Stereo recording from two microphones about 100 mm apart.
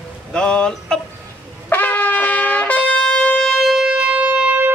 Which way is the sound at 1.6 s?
15° left (ahead or behind).